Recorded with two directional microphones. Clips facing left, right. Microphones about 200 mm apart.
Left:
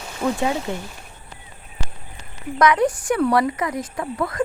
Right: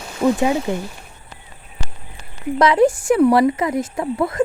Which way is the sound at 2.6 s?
25° right (ahead or behind).